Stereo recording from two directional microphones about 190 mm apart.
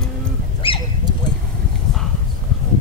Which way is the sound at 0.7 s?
30° left (ahead or behind).